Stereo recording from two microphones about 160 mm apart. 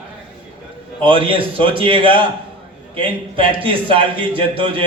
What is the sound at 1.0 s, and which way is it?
A man's voice, 35° right (ahead or behind).